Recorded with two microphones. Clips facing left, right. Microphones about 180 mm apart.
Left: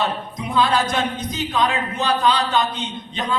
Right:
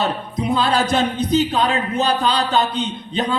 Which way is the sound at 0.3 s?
30° right (ahead or behind).